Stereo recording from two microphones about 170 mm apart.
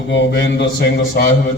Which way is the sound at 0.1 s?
90° left.